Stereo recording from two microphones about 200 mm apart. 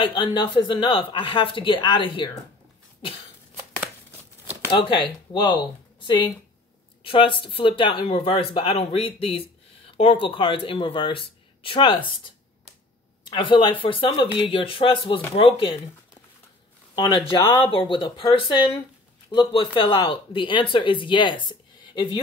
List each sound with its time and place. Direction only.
0.0 s speech: 25° left (ahead or behind)
4.7 s speech: 25° left (ahead or behind)
13.3 s speech: 25° left (ahead or behind)
16.9 s speech: 20° left (ahead or behind)